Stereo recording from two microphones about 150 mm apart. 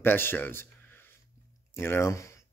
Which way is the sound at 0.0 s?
15° left (ahead or behind).